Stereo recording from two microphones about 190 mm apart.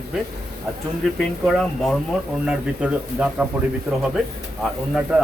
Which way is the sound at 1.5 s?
Centre (ahead or behind).